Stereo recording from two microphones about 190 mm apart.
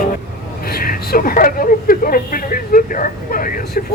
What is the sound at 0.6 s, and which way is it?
Speech, 50° left (ahead or behind).